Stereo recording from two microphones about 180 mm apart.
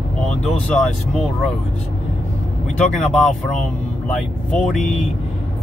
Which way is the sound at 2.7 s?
5° left (ahead or behind).